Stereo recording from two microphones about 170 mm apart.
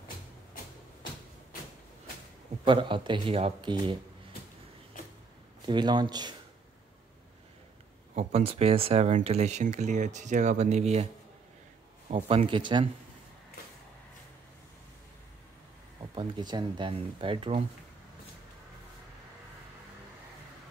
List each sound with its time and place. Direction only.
2.6 s speech: 30° right (ahead or behind)
5.7 s speech: 25° right (ahead or behind)
8.1 s speech: 40° right (ahead or behind)
12.1 s speech: 35° right (ahead or behind)
16.0 s speech: 25° right (ahead or behind)